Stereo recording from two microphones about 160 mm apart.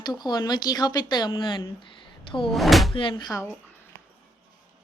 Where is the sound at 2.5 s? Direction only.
Centre (ahead or behind).